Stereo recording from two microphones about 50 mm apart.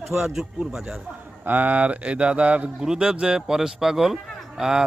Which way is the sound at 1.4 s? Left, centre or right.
Right.